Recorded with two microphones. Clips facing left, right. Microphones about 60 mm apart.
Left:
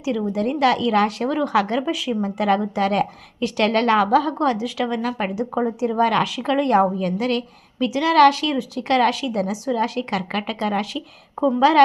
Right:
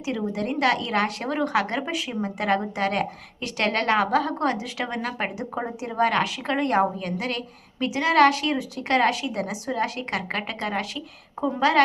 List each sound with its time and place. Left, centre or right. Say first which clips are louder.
0.1 s a woman's voice: left 5 dB; centre